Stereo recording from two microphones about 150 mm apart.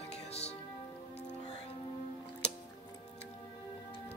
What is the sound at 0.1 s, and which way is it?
Music, 45° left (ahead or behind).